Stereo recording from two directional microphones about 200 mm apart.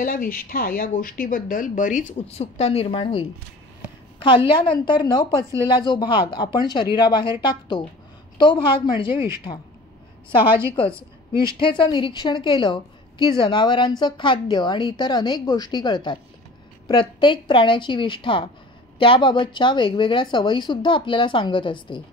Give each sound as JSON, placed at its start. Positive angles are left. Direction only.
{"t": 0.0, "sound": "a woman's voice", "side_deg": 45}
{"t": 4.6, "sound": "a woman's voice", "side_deg": 25}
{"t": 11.4, "sound": "a woman's voice", "side_deg": 25}